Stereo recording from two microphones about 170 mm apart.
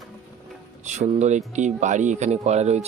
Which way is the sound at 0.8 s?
45° right (ahead or behind).